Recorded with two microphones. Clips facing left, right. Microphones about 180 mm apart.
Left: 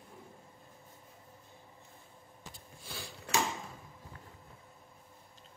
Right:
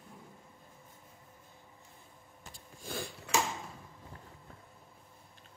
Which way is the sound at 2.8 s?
50° right (ahead or behind).